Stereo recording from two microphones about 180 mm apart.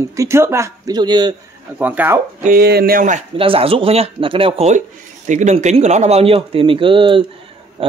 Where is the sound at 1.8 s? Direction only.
10° right (ahead or behind).